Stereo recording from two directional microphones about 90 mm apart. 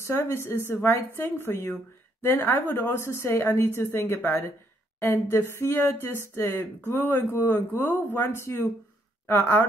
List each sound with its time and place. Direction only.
0.0 s speech: 25° left (ahead or behind)